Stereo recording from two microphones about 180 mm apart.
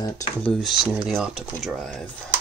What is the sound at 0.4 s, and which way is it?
Speech, centre (ahead or behind).